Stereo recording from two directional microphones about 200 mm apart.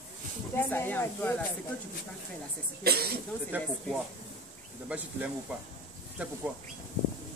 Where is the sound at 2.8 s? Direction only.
50° right (ahead or behind).